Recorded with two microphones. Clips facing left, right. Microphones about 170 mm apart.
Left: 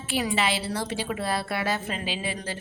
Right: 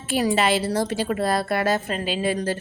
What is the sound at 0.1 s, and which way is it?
A woman's voice, 40° right (ahead or behind).